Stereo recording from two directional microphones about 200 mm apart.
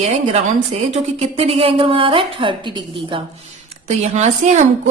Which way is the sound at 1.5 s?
25° right (ahead or behind).